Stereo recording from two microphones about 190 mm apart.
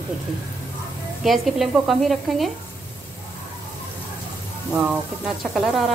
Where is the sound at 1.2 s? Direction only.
Centre (ahead or behind).